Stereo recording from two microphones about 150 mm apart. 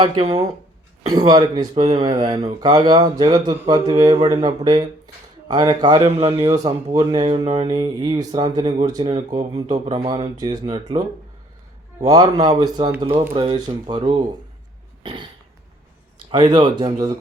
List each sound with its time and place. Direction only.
0.0 s a man's voice: 30° right (ahead or behind)
2.1 s speech: 25° right (ahead or behind)
6.0 s a man's voice: 40° right (ahead or behind)
12.0 s a man's voice: 30° right (ahead or behind)
15.0 s cough: 30° right (ahead or behind)
16.3 s a man's voice: 30° right (ahead or behind)